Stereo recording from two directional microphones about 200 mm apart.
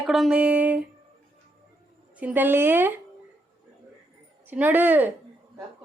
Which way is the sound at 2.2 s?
10° right (ahead or behind).